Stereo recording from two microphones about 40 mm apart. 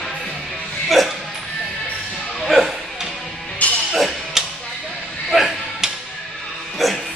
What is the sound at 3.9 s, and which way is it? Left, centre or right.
Music, centre.